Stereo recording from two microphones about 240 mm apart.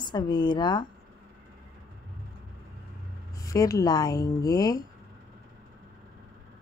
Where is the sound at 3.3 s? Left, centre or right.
Centre.